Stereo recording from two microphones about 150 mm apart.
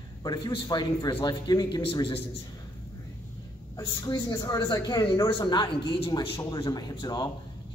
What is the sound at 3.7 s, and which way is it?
A man's voice, 25° left (ahead or behind).